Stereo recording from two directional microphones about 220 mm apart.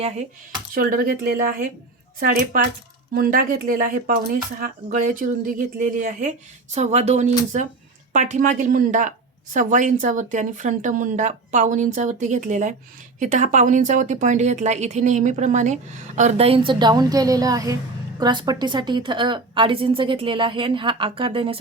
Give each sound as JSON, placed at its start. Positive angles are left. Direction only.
{"t": 0.7, "sound": "a woman's voice", "side_deg": -40}